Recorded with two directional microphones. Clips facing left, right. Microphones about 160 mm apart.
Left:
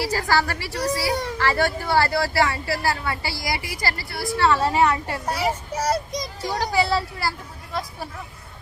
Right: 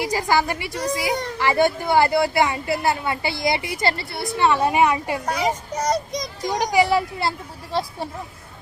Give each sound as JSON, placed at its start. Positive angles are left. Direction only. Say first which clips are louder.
{"t": 0.0, "sound": "speech", "louder": "right 2 dB", "side_deg": -15}
{"t": 5.7, "sound": "child singing", "louder": "right 1 dB", "side_deg": 5}
{"t": 6.4, "sound": "speech", "louder": "right 4 dB", "side_deg": -15}